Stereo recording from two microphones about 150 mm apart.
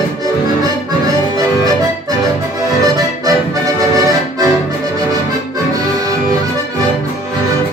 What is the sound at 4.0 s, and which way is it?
Accordion, 25° right (ahead or behind).